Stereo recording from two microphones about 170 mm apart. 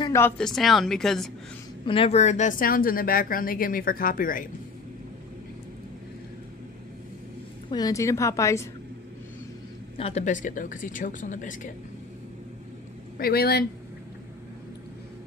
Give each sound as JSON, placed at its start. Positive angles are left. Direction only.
{"t": 0.0, "sound": "a sound", "side_deg": 15}
{"t": 0.4, "sound": "speech", "side_deg": 0}
{"t": 1.9, "sound": "speech", "side_deg": 35}
{"t": 2.6, "sound": "speech", "side_deg": 60}
{"t": 7.7, "sound": "a woman's voice", "side_deg": 20}
{"t": 9.9, "sound": "speech", "side_deg": 40}
{"t": 13.2, "sound": "speech", "side_deg": 65}